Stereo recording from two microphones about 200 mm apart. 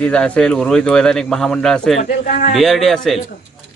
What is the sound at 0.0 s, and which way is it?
A man's voice, 5° left (ahead or behind).